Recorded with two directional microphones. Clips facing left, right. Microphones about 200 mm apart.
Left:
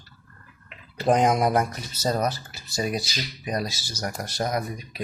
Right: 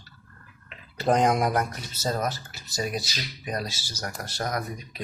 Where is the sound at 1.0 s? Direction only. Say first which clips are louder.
Left 2 dB; 5° left (ahead or behind).